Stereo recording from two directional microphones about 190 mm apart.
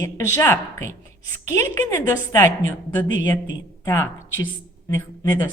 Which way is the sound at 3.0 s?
80° left.